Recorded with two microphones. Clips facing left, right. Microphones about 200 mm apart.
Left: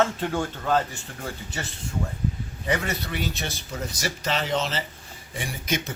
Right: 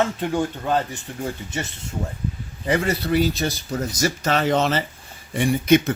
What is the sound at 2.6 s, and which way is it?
Speech, 30° right (ahead or behind).